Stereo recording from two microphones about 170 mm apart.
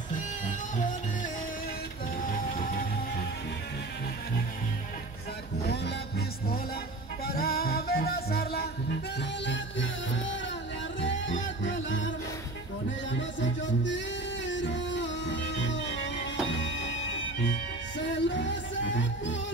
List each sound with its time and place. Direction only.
0.1 s music: 50° left (ahead or behind)
2.6 s music: 55° left (ahead or behind)
5.7 s music: 70° left (ahead or behind)
7.2 s music: 60° left (ahead or behind)
9.5 s music: 90° left
13.1 s music: 90° left
18.1 s music: 90° left